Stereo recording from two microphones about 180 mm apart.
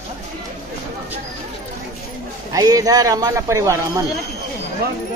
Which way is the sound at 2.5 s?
20° right (ahead or behind).